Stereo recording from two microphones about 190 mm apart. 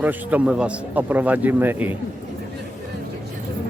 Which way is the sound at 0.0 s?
10° right (ahead or behind).